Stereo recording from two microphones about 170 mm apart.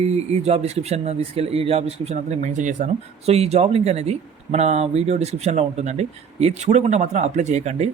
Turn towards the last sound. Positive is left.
turn(degrees=-40)  # may be behind; listen again after turning